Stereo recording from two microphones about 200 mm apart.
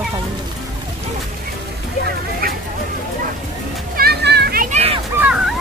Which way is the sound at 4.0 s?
55° right (ahead or behind).